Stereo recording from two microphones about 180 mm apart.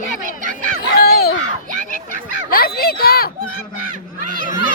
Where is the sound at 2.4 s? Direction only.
55° left (ahead or behind).